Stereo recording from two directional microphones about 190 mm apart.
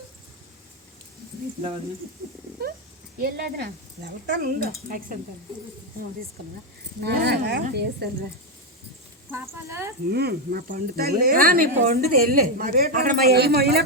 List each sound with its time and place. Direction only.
2.6 s a sound: 55° right (ahead or behind)
3.2 s speech: 50° right (ahead or behind)
7.0 s speech: 55° right (ahead or behind)
9.3 s speech: 15° right (ahead or behind)
10.1 s speech: 55° right (ahead or behind)